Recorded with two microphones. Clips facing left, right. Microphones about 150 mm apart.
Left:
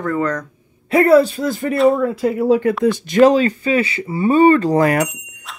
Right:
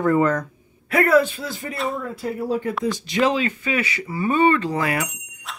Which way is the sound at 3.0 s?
50° left (ahead or behind).